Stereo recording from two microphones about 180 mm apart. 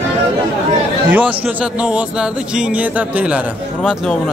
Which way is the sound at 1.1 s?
10° right (ahead or behind).